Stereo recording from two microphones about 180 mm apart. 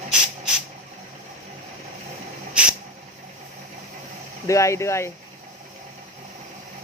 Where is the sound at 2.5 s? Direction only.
5° right (ahead or behind).